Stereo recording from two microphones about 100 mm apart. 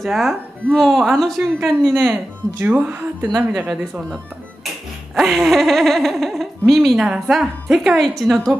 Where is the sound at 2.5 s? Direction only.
20° right (ahead or behind).